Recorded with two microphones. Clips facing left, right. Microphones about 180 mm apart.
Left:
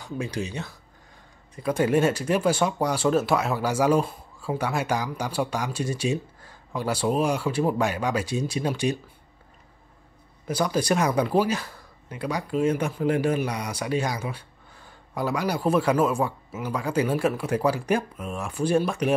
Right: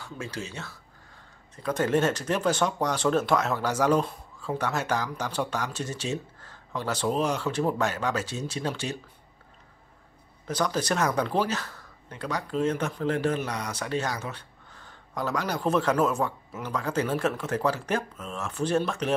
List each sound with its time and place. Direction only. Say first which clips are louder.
0.0 s speech: left 6 dB; 15° left (ahead or behind)
10.4 s speech: left 3 dB; 10° left (ahead or behind)